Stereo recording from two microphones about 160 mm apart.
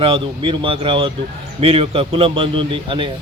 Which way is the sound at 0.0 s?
35° right (ahead or behind).